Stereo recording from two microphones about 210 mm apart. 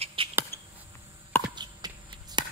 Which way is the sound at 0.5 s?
10° left (ahead or behind).